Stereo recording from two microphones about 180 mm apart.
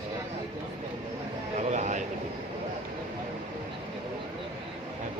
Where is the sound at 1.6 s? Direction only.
40° right (ahead or behind).